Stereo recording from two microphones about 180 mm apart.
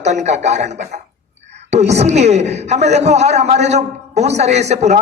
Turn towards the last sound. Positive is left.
turn(degrees=-40)  # may be behind; listen again after turning